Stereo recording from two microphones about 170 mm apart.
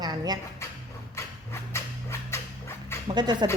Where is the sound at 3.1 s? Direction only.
25° right (ahead or behind).